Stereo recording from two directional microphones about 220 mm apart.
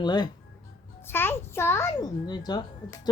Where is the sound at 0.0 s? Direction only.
20° left (ahead or behind).